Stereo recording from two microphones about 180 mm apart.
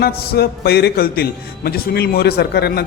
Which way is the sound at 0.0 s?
60° left (ahead or behind).